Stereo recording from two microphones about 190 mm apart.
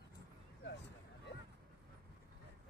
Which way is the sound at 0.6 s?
65° left (ahead or behind).